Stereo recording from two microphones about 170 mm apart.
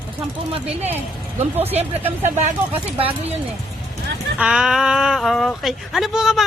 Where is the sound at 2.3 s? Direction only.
45° right (ahead or behind).